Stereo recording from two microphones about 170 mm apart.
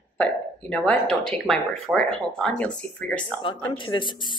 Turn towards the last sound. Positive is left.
turn(degrees=30)  # may be behind; listen again after turning